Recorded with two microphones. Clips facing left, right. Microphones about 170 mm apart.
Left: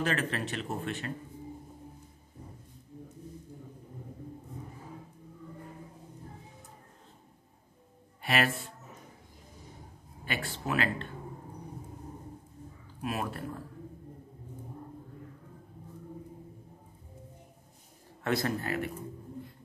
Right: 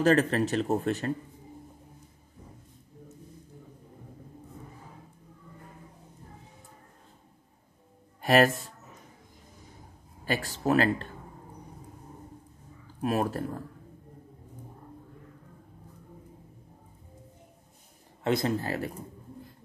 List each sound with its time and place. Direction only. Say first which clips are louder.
0.0 s speech: right 9 dB; 40° right (ahead or behind)
8.2 s speech: right 8 dB; 40° right (ahead or behind)
10.2 s speech: right 7 dB; 40° right (ahead or behind)
13.0 s speech: right 7 dB; 40° right (ahead or behind)
18.2 s speech: right 3 dB; 20° right (ahead or behind)